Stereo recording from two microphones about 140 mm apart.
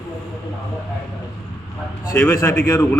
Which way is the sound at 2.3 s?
25° left (ahead or behind).